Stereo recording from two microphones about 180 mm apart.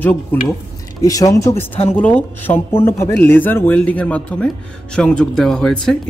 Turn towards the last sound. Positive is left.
turn(degrees=5)  # may be behind; listen again after turning